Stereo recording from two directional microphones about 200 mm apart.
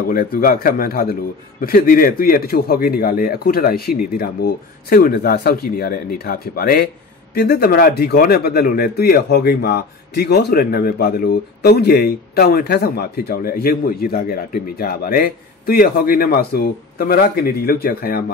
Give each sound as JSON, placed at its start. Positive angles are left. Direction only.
{"t": 0.1, "sound": "speech", "side_deg": 45}